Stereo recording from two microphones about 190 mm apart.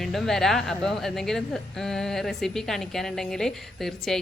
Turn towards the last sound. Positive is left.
turn(degrees=0)  # may be behind; listen again after turning